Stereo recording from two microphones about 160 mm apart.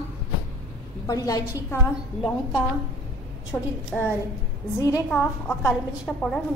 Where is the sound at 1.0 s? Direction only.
20° left (ahead or behind).